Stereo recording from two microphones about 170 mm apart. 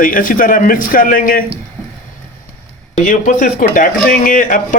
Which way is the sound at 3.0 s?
50° left (ahead or behind).